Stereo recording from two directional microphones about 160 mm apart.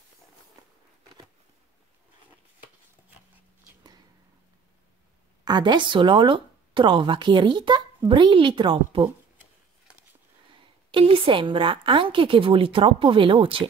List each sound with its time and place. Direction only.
5.4 s a woman's voice: 25° right (ahead or behind)
10.9 s a woman's voice: 35° right (ahead or behind)